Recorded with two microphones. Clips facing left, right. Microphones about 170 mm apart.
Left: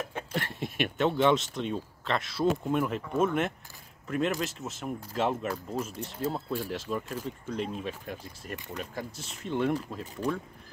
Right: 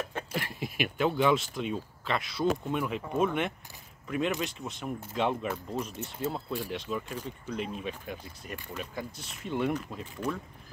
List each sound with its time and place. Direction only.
0.3 s speech: 5° right (ahead or behind)
10.2 s speech: 35° left (ahead or behind)